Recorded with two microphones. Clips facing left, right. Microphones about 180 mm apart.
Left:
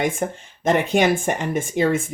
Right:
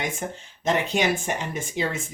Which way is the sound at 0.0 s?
55° left (ahead or behind).